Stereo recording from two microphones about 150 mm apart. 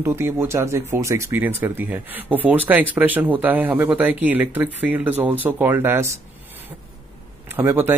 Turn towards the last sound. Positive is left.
turn(degrees=-15)  # may be behind; listen again after turning